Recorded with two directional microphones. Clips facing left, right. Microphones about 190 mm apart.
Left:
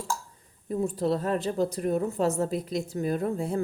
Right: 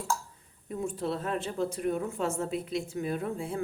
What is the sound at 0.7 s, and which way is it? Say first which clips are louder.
A woman's voice: left 6 dB; 35° left (ahead or behind).